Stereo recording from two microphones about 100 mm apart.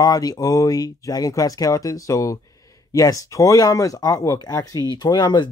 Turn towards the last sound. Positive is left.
turn(degrees=45)  # may be behind; listen again after turning